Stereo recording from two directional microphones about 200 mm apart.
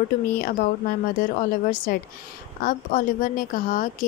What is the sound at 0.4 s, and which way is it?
A woman's voice, 45° left (ahead or behind).